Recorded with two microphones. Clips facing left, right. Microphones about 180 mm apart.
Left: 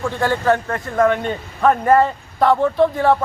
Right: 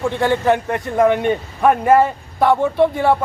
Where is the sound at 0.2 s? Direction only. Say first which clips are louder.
Right 1 dB; 15° right (ahead or behind).